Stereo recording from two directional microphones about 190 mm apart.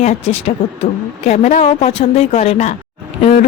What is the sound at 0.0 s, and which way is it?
Speech, 35° left (ahead or behind).